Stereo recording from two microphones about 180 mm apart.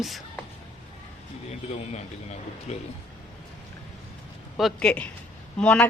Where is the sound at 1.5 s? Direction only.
40° left (ahead or behind).